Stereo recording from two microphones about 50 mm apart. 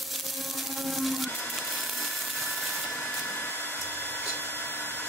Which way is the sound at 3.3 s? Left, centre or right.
Left.